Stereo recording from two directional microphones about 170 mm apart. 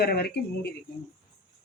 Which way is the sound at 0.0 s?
70° left (ahead or behind).